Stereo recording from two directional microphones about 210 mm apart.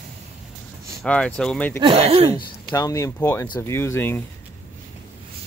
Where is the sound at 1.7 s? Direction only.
25° right (ahead or behind).